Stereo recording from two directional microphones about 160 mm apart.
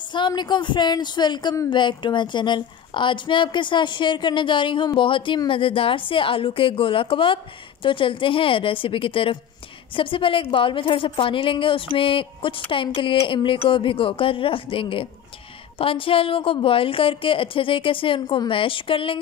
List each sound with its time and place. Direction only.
0.1 s a woman's voice: 30° left (ahead or behind)